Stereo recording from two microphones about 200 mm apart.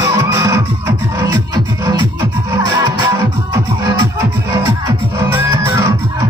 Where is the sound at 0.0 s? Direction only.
15° right (ahead or behind).